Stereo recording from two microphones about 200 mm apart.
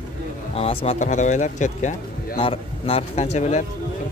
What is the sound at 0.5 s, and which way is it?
Speech, 30° left (ahead or behind).